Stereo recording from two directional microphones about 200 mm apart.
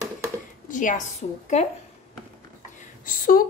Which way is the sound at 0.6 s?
40° left (ahead or behind).